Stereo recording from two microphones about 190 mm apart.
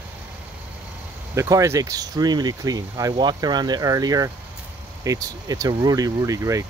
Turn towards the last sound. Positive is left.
turn(degrees=-15)  # may be behind; listen again after turning